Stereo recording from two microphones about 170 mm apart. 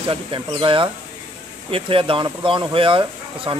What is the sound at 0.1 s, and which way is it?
Speech, 30° right (ahead or behind).